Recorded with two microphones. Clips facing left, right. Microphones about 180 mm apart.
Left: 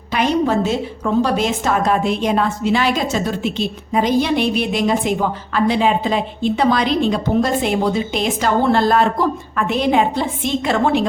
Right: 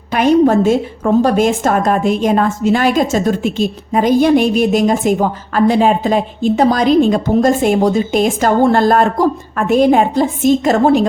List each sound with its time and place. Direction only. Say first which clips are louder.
0.1 s a woman's voice: right 7 dB; 50° right (ahead or behind)